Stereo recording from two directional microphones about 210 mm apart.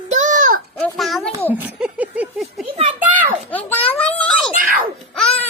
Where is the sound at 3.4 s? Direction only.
10° left (ahead or behind).